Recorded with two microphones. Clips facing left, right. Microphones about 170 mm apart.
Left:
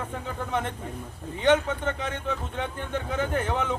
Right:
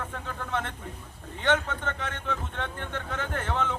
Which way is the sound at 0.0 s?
15° left (ahead or behind).